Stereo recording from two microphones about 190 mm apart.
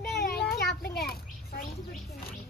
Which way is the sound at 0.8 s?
55° left (ahead or behind).